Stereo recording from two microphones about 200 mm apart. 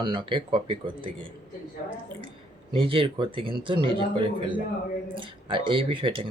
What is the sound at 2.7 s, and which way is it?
Speech, 25° right (ahead or behind).